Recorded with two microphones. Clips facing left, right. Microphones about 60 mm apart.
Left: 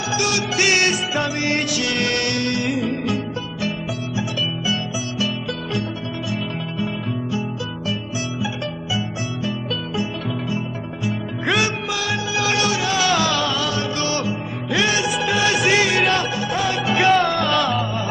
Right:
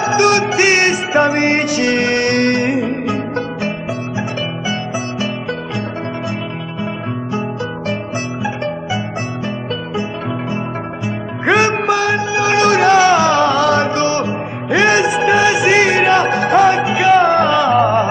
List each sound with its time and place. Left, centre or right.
0.0 s music: right
2.3 s music: right
11.4 s music: right
13.1 s music: right
15.5 s music: right
16.3 s music: right
16.8 s music: centre
17.2 s music: right
17.7 s music: right